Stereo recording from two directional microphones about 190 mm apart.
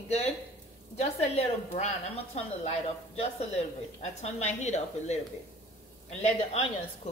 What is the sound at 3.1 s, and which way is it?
A woman's voice, 35° left (ahead or behind).